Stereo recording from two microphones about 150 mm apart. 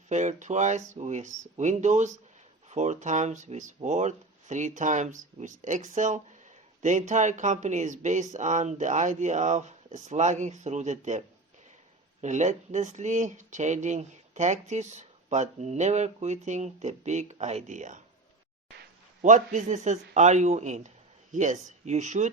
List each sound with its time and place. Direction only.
0.1 s speech: 55° right (ahead or behind)
12.2 s speech: 50° right (ahead or behind)
19.2 s speech: 55° right (ahead or behind)